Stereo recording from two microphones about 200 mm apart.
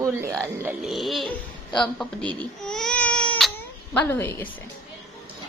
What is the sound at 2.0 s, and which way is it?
Baby cry, 5° left (ahead or behind).